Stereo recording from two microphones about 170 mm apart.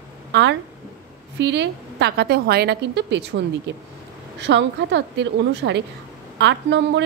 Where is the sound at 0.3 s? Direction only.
90° right.